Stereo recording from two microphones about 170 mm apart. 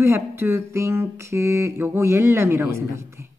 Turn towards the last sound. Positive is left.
turn(degrees=-15)  # may be behind; listen again after turning